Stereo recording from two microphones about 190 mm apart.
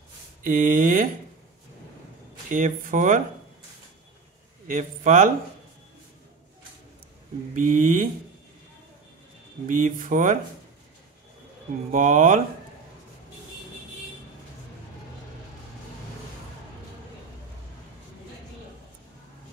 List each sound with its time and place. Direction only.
0.4 s speech: 40° right (ahead or behind)
2.5 s speech: 40° right (ahead or behind)
4.6 s speech: 40° right (ahead or behind)
7.5 s speech: 45° right (ahead or behind)
9.7 s speech: 45° right (ahead or behind)
11.9 s speech: 40° right (ahead or behind)